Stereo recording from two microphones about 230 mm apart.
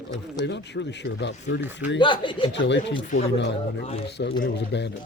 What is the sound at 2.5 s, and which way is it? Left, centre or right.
Speech, left.